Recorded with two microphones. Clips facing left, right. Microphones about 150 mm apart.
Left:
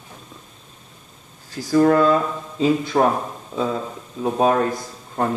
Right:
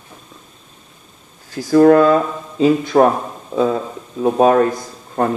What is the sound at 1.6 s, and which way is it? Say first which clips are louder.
A man's voice: right 6 dB; 50° right (ahead or behind).